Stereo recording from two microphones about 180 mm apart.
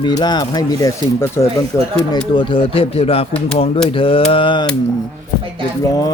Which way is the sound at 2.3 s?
30° left (ahead or behind).